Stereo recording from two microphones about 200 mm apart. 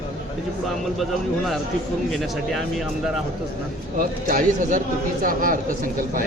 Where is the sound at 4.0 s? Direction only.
45° right (ahead or behind).